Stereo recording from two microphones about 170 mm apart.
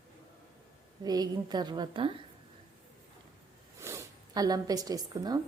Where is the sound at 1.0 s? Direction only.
25° right (ahead or behind).